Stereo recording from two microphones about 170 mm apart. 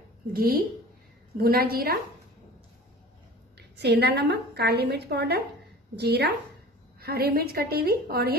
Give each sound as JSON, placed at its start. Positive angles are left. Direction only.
{"t": 0.3, "sound": "a woman's voice", "side_deg": -65}
{"t": 3.5, "sound": "a woman's voice", "side_deg": -75}